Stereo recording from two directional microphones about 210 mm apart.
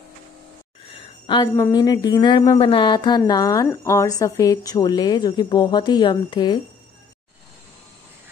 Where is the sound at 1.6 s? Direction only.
20° left (ahead or behind).